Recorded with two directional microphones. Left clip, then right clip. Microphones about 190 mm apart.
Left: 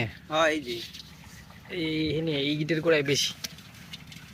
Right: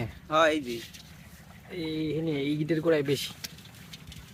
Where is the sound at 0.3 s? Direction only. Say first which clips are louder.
Right 1 dB; 55° right (ahead or behind).